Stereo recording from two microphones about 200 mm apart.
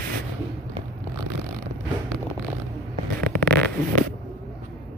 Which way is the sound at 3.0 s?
50° right (ahead or behind).